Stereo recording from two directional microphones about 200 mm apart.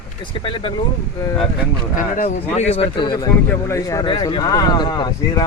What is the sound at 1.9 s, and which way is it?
Speech, 40° left (ahead or behind).